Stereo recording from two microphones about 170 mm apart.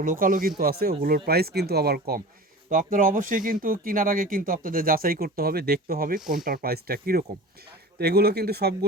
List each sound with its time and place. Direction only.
0.0 s speech: 55° right (ahead or behind)
2.6 s speech: 55° right (ahead or behind); by 8.7 s 70° right (ahead or behind)